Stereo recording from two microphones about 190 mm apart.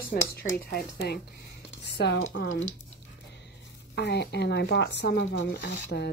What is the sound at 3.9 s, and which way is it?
Speech, 60° left (ahead or behind).